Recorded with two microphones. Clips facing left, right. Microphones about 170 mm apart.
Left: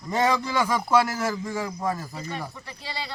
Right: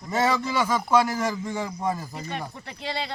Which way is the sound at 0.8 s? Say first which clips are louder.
Right 1 dB; 10° right (ahead or behind).